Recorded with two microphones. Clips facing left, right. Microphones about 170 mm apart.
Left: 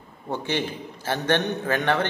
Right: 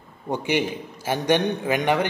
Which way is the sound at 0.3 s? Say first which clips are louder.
Right 3 dB; 15° right (ahead or behind).